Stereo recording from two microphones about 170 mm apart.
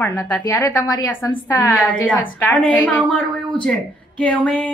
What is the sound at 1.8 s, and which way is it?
A woman's voice, 10° left (ahead or behind).